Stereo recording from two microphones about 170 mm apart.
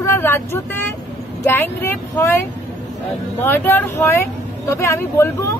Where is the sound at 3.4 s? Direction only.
10° left (ahead or behind).